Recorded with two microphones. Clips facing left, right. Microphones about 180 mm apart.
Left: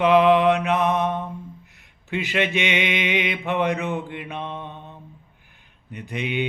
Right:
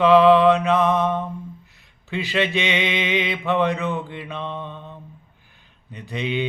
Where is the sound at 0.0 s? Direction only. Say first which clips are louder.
Right 3 dB; 20° left (ahead or behind).